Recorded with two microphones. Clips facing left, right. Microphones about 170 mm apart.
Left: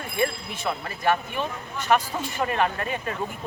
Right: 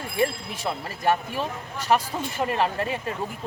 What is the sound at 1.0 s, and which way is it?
Speech, 35° right (ahead or behind).